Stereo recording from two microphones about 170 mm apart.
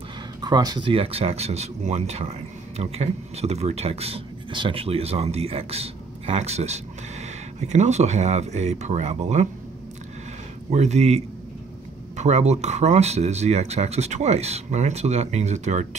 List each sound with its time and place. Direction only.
0.4 s speech: 25° right (ahead or behind); by 9.5 s 40° right (ahead or behind)
10.7 s speech: 40° right (ahead or behind)